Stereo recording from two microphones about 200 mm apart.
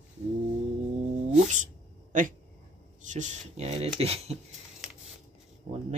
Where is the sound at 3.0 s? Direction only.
35° right (ahead or behind).